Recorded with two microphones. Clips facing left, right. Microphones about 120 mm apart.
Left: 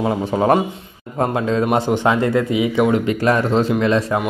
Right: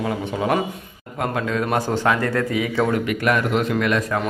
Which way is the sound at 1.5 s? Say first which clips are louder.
Left 4 dB; 25° left (ahead or behind).